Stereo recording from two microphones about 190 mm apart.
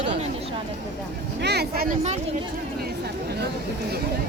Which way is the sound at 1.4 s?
60° right (ahead or behind).